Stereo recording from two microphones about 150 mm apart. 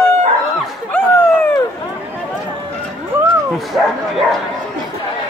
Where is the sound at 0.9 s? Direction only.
15° left (ahead or behind).